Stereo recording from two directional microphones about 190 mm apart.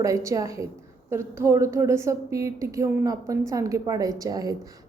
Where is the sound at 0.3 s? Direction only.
15° right (ahead or behind).